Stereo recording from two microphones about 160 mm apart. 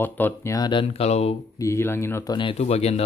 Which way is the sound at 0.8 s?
40° left (ahead or behind).